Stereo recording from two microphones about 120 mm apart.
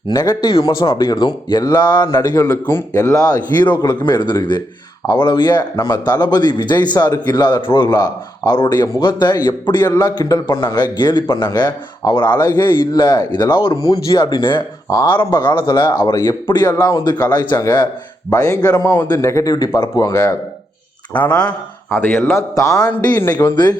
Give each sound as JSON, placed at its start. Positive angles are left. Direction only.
{"t": 0.1, "sound": "a man's voice", "side_deg": 30}
{"t": 10.4, "sound": "a man's voice", "side_deg": 45}
{"t": 12.3, "sound": "a man's voice", "side_deg": 15}
{"t": 12.9, "sound": "a man's voice", "side_deg": 40}
{"t": 14.8, "sound": "speech", "side_deg": 30}
{"t": 15.6, "sound": "a man's voice", "side_deg": 40}
{"t": 18.7, "sound": "a man's voice", "side_deg": 15}
{"t": 19.0, "sound": "a man's voice", "side_deg": 30}
{"t": 21.1, "sound": "a man's voice", "side_deg": 10}